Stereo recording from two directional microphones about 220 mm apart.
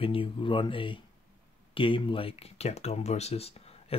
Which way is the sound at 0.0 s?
25° left (ahead or behind).